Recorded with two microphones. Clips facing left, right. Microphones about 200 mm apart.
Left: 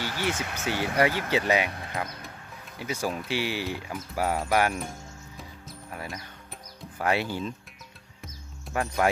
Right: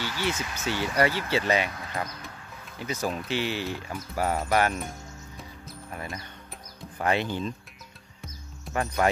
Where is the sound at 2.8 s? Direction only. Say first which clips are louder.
Even; 10° left (ahead or behind).